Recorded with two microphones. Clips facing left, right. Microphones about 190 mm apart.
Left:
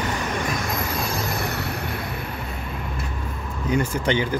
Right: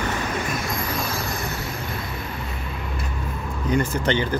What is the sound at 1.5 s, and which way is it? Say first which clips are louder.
Vehicle: left 2 dB; 65° left (ahead or behind).